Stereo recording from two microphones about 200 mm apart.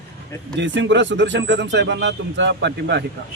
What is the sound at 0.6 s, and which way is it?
Speech, 65° right (ahead or behind).